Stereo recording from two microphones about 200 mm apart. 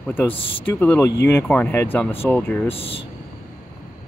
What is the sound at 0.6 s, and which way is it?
Speech, 10° left (ahead or behind).